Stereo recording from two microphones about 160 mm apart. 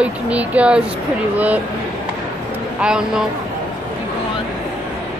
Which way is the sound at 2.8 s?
5° right (ahead or behind).